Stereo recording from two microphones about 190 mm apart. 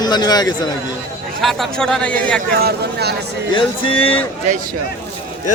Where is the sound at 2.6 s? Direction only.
55° right (ahead or behind).